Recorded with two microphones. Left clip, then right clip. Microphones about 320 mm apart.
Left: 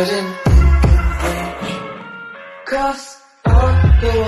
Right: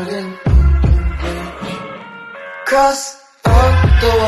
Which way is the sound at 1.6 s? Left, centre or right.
Centre.